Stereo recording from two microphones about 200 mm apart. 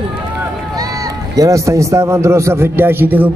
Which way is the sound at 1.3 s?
15° right (ahead or behind).